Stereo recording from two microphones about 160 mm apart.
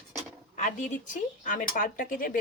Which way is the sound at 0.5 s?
50° left (ahead or behind).